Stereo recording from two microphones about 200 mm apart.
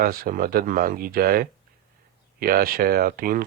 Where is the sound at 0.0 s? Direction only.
45° right (ahead or behind).